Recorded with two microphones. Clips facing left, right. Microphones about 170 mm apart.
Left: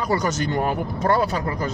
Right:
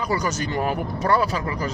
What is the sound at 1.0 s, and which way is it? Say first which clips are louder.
Speech: left 1 dB; 40° left (ahead or behind).